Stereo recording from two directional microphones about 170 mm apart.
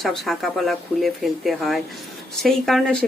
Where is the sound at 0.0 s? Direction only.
Centre (ahead or behind).